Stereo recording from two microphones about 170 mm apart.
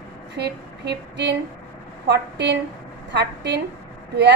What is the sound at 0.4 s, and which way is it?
A woman's voice, 90° right.